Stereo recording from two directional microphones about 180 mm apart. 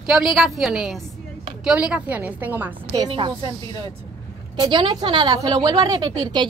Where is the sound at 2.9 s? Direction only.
25° right (ahead or behind).